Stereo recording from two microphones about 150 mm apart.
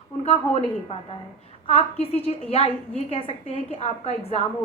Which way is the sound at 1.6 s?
40° left (ahead or behind).